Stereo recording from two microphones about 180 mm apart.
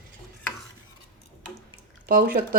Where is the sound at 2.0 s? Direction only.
50° right (ahead or behind).